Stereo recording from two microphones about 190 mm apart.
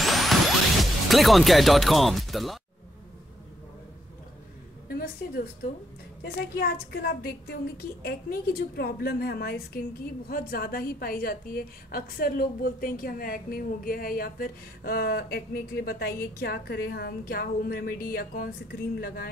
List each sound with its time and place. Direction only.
0.0 s music: centre (ahead or behind)
0.7 s speech: centre (ahead or behind)
4.8 s a woman's voice: 50° left (ahead or behind)